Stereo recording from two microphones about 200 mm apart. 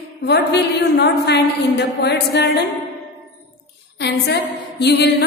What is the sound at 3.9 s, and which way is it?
A woman's voice, 55° left (ahead or behind).